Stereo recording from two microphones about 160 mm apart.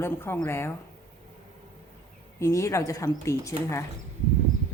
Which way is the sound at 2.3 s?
15° left (ahead or behind).